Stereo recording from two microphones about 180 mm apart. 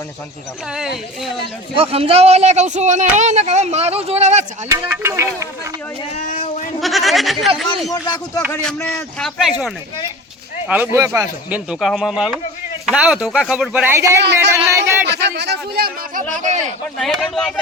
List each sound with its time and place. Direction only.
0.7 s speech: 5° right (ahead or behind)
1.7 s speech: 35° right (ahead or behind)
4.7 s speech: 15° right (ahead or behind)
6.1 s a sound: 45° left (ahead or behind)
6.7 s speech: centre (ahead or behind)
10.7 s speech: 10° right (ahead or behind)
15.0 s speech: 70° right (ahead or behind)
16.3 s speech: 40° right (ahead or behind)
17.0 s speech: centre (ahead or behind)